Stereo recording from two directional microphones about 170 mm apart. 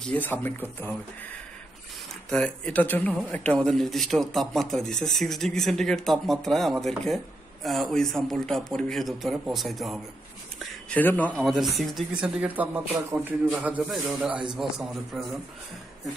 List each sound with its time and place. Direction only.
0.1 s speech: 10° left (ahead or behind)
2.2 s speech: 5° left (ahead or behind)